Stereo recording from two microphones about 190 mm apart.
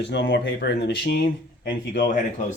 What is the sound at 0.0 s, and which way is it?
Speech, 65° left (ahead or behind).